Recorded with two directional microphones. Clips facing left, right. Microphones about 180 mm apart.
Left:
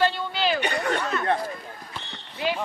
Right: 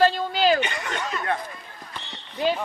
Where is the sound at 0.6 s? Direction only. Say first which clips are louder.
Left 3 dB; 35° left (ahead or behind).